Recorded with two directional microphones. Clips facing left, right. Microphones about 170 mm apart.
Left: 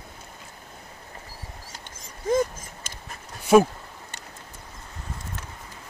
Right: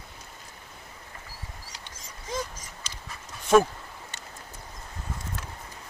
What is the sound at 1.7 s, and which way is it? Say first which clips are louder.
Dog: left 2 dB; 50° left (ahead or behind).